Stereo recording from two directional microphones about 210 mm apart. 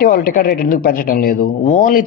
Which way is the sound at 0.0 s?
40° left (ahead or behind).